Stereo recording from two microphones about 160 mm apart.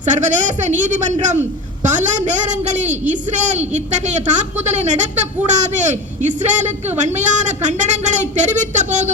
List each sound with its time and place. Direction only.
0.0 s a man's voice: 50° right (ahead or behind)